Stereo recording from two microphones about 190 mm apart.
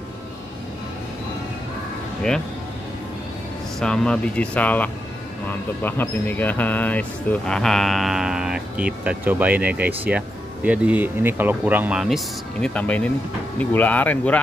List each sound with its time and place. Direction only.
3.8 s speech: 5° left (ahead or behind)